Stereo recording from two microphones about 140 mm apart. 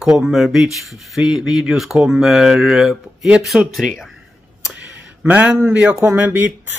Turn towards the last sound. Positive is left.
turn(degrees=-15)  # may be behind; listen again after turning